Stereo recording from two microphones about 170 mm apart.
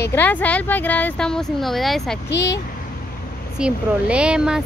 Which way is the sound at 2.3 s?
20° left (ahead or behind).